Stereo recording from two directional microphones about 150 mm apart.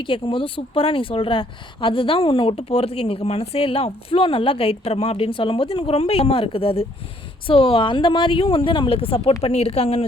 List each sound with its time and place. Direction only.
0.0 s speech: 35° left (ahead or behind)